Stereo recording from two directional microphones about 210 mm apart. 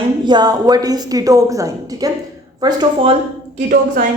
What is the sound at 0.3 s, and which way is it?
A woman's voice, 20° right (ahead or behind).